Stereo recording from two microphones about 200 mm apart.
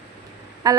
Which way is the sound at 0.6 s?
20° right (ahead or behind).